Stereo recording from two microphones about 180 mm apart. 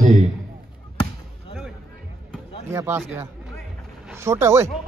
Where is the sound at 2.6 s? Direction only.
15° right (ahead or behind).